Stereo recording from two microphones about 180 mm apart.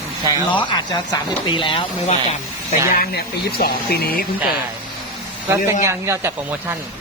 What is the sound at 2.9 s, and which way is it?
Speech, 55° left (ahead or behind).